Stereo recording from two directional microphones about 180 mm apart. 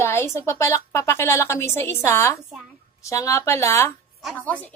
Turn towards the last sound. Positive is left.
turn(degrees=10)  # may be behind; listen again after turning